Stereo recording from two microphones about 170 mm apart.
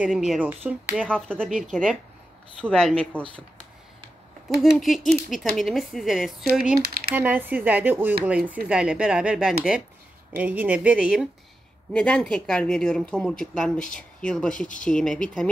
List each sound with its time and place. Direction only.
0.0 s speech: centre (ahead or behind)
1.0 s speech: 5° left (ahead or behind)
4.7 s speech: centre (ahead or behind)
6.8 s speech: 65° right (ahead or behind)
7.2 s speech: 10° right (ahead or behind); by 15.5 s 5° left (ahead or behind)